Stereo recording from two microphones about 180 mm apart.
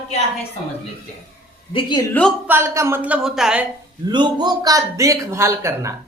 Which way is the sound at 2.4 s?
10° right (ahead or behind).